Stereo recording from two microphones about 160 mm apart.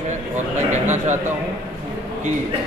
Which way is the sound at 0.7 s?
50° right (ahead or behind).